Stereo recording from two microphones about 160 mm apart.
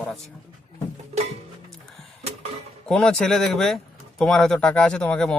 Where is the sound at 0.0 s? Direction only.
Centre (ahead or behind).